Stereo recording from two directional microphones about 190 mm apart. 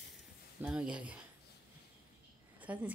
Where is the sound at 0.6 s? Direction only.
5° right (ahead or behind).